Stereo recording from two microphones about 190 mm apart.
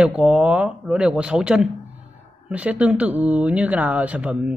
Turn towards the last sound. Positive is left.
turn(degrees=-5)  # may be behind; listen again after turning